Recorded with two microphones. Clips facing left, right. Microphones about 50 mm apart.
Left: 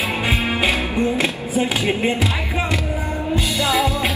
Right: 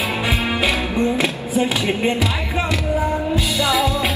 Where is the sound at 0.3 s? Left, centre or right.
Centre.